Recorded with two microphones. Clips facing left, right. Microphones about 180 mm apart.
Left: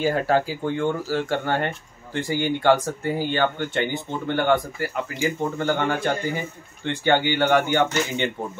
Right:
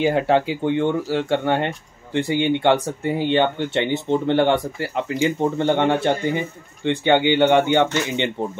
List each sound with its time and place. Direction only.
0.0 s speech: 20° right (ahead or behind)